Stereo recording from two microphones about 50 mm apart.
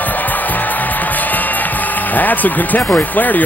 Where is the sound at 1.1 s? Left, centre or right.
Left.